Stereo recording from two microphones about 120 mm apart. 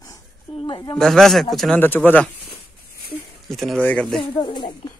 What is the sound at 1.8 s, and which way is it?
Speech, 15° left (ahead or behind).